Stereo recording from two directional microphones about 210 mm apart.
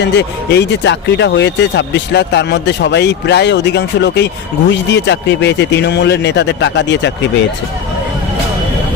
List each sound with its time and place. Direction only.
0.0 s speech: 55° left (ahead or behind)